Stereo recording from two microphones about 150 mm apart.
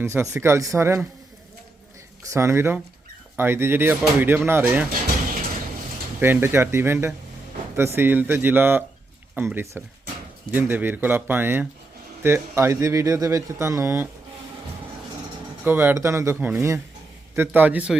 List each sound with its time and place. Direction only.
0.0 s speech: 15° right (ahead or behind)
2.3 s speech: 15° right (ahead or behind)
6.1 s speech: 15° right (ahead or behind)
15.6 s speech: 15° right (ahead or behind)